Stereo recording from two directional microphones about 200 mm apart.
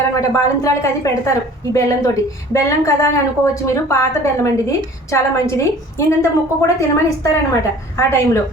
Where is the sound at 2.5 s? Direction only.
15° left (ahead or behind).